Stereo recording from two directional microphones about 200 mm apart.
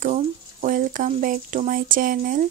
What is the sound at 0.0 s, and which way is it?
Speech, 40° right (ahead or behind).